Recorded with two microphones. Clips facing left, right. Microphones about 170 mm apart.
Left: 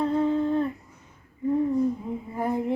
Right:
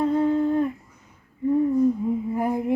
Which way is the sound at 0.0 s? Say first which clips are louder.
Right 3 dB; 10° right (ahead or behind).